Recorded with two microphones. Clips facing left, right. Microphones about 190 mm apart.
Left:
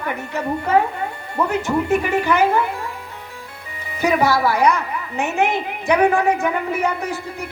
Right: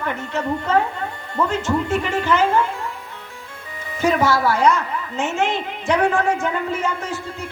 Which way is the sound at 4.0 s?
15° left (ahead or behind).